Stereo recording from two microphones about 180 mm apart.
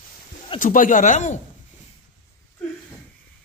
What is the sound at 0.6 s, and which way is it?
Speech, 45° left (ahead or behind).